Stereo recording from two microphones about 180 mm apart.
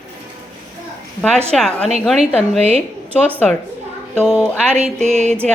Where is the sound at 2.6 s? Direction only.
35° right (ahead or behind).